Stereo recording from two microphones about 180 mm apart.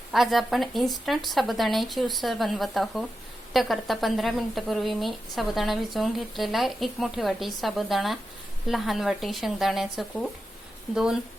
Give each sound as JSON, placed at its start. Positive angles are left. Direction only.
{"t": 0.1, "sound": "speech", "side_deg": 0}